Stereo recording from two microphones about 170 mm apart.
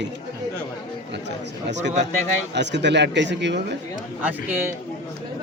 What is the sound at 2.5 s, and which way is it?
Speech, 90° right.